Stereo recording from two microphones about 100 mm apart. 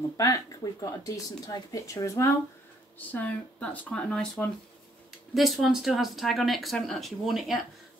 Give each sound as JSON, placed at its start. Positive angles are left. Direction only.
{"t": 0.2, "sound": "speech", "side_deg": 35}
{"t": 3.1, "sound": "speech", "side_deg": 15}
{"t": 5.6, "sound": "speech", "side_deg": -5}